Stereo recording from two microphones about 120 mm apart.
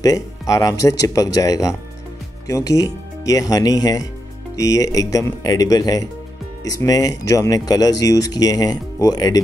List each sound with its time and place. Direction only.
0.0 s speech: 30° left (ahead or behind)